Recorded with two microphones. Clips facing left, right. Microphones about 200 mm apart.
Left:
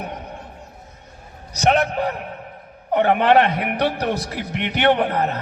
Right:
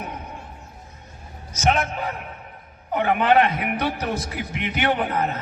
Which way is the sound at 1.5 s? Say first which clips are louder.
Left 4 dB; 65° left (ahead or behind).